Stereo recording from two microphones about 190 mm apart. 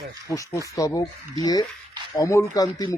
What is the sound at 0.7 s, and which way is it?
Speech, 20° left (ahead or behind).